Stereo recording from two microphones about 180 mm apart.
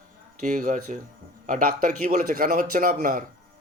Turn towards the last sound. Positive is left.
turn(degrees=-50)  # may be behind; listen again after turning